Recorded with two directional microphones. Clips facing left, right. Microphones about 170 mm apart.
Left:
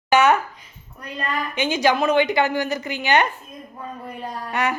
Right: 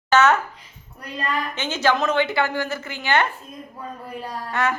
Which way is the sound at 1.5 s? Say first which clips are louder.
Left 3 dB; 15° left (ahead or behind).